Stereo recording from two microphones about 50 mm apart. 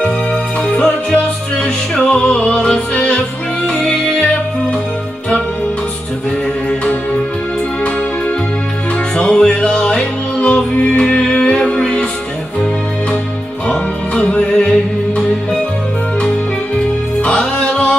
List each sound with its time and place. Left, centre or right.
0.7 s music: left
9.1 s music: centre
13.7 s music: left
17.3 s music: centre